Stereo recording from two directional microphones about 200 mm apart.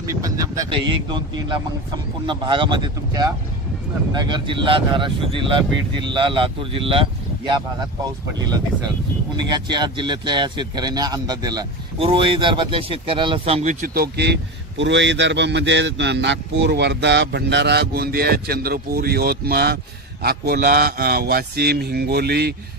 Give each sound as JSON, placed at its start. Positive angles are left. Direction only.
{"t": 0.2, "sound": "speech", "side_deg": -15}
{"t": 9.5, "sound": "speech", "side_deg": -20}